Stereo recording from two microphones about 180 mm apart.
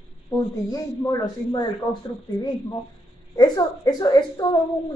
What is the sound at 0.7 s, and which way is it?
A woman's voice, 20° left (ahead or behind).